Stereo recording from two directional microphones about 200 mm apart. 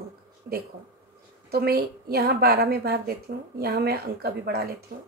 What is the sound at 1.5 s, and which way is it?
A woman's voice, 50° right (ahead or behind).